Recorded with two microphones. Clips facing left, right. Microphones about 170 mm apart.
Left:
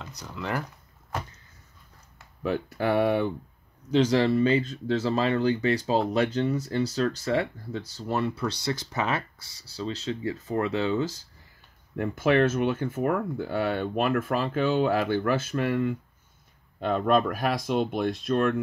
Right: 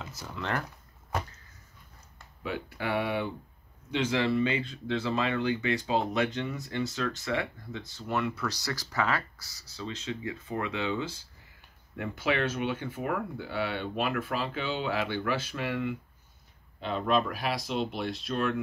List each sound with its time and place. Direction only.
0.0 s speech: 5° right (ahead or behind)
2.4 s speech: 45° left (ahead or behind)